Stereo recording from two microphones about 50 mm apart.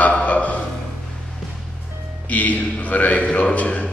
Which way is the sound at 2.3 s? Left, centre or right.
Left.